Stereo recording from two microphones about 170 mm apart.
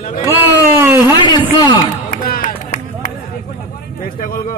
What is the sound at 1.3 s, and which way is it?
Speech, 25° left (ahead or behind).